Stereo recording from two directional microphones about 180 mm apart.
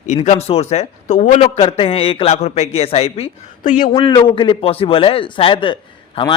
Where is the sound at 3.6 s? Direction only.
45° left (ahead or behind).